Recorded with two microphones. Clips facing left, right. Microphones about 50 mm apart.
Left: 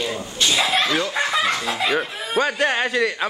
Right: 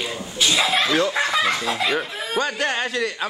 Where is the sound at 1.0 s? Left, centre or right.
Centre.